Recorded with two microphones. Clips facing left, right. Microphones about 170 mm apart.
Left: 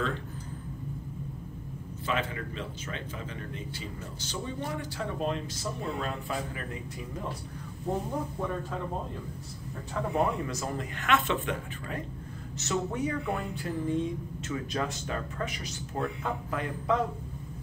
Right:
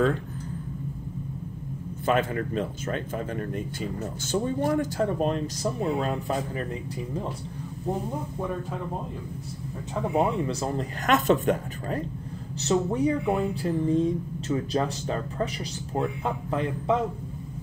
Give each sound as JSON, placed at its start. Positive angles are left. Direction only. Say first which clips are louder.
{"t": 2.0, "sound": "speech", "louder": "right 8 dB", "side_deg": -50}
{"t": 10.1, "sound": "speech", "louder": "right 4 dB", "side_deg": -25}
{"t": 12.6, "sound": "speech", "louder": "right 7 dB", "side_deg": -30}